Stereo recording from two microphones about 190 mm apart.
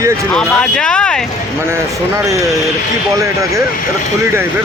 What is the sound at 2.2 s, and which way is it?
Speech, 15° right (ahead or behind).